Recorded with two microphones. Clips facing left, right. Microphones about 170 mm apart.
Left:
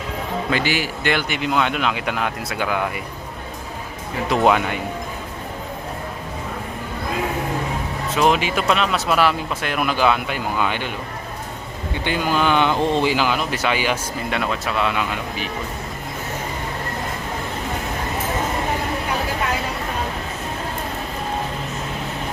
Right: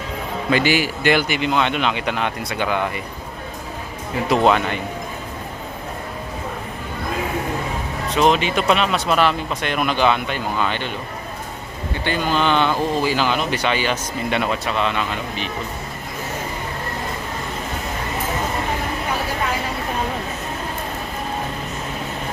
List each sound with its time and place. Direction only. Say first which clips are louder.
0.7 s speech: right 4 dB; 10° right (ahead or behind)
4.4 s speech: left 2 dB; 10° left (ahead or behind)
8.1 s speech: right 1 dB; 5° left (ahead or behind)
12.0 s speech: even; 10° left (ahead or behind)
13.1 s speech: right 1 dB; 5° left (ahead or behind)
14.3 s speech: right 2 dB; centre (ahead or behind)